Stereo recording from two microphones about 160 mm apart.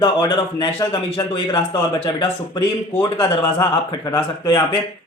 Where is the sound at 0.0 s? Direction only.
30° left (ahead or behind).